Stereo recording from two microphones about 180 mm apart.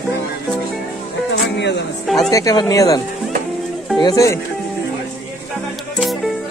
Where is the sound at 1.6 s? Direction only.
75° left (ahead or behind).